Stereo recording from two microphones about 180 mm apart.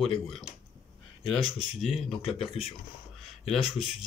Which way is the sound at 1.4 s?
Centre (ahead or behind).